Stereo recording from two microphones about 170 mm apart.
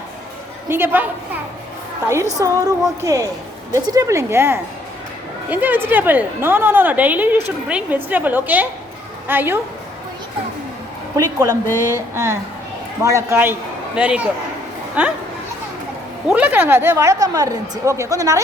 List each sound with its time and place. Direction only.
0.7 s a woman's voice: 15° right (ahead or behind)
2.4 s a woman's voice: 20° right (ahead or behind)
11.4 s speech: 15° left (ahead or behind)
11.9 s a woman's voice: 15° right (ahead or behind)
16.3 s a woman's voice: 10° right (ahead or behind)